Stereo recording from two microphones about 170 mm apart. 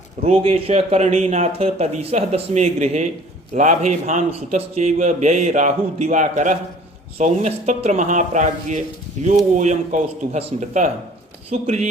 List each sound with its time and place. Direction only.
0.3 s a man's voice: 35° right (ahead or behind)